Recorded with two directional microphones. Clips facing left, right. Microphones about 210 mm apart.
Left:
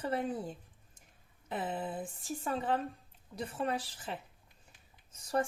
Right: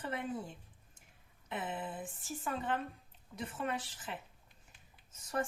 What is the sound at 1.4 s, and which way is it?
A woman's voice, 30° left (ahead or behind).